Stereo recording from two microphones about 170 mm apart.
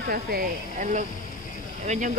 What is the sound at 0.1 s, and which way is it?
Speech, 60° right (ahead or behind).